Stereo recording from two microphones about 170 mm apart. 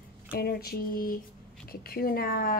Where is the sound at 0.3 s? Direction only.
65° left (ahead or behind).